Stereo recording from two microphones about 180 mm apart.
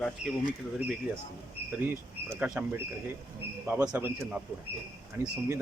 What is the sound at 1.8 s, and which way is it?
Speech, 10° right (ahead or behind).